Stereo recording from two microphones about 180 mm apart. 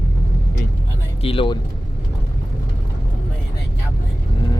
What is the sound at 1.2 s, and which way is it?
Speech, 30° left (ahead or behind).